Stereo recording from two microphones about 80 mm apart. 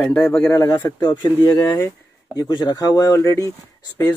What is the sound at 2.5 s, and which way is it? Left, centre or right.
Speech, left.